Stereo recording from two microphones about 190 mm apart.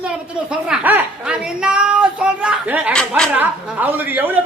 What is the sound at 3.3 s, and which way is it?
A woman's voice, 10° right (ahead or behind).